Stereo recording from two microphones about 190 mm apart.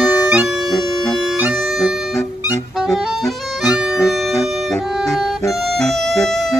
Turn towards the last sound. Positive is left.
turn(degrees=0)  # may be behind; listen again after turning